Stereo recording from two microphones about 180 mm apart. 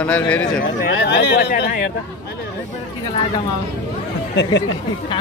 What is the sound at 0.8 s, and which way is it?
Speech, 70° left (ahead or behind).